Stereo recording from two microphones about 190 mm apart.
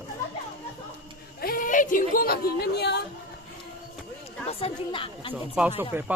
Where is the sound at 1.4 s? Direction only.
50° left (ahead or behind).